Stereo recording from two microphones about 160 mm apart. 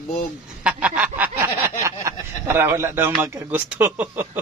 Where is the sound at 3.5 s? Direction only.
10° right (ahead or behind).